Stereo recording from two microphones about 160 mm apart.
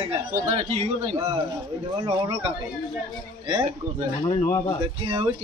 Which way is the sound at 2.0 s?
40° right (ahead or behind).